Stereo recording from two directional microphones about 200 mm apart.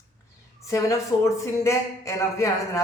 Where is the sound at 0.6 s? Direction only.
15° left (ahead or behind).